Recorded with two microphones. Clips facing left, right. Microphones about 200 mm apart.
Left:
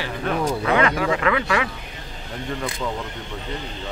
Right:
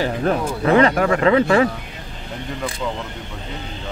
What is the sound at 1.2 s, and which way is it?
Speech, 35° right (ahead or behind).